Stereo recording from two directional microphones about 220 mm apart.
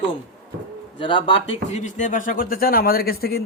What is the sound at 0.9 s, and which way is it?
Speech, 20° left (ahead or behind).